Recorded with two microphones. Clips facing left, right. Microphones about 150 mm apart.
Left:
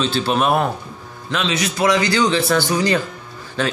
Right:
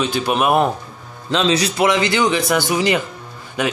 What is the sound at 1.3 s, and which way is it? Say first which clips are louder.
Speech: right 4 dB; 35° right (ahead or behind).